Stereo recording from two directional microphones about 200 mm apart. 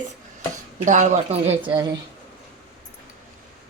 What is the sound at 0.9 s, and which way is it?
Speech, 40° right (ahead or behind).